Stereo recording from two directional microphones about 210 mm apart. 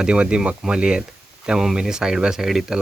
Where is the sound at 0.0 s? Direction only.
5° right (ahead or behind).